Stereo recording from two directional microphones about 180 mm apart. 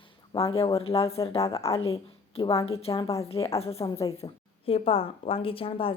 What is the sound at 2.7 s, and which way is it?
Speech, 20° left (ahead or behind).